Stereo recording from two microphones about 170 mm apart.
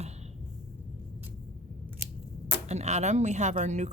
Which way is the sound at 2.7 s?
40° right (ahead or behind).